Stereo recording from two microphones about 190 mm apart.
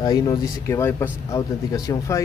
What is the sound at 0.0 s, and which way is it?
Speech, 20° left (ahead or behind).